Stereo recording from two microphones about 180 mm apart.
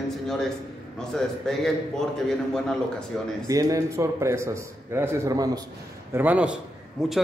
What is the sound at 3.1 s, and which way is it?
Speech, 5° left (ahead or behind).